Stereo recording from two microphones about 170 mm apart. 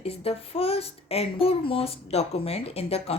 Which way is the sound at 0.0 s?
35° left (ahead or behind).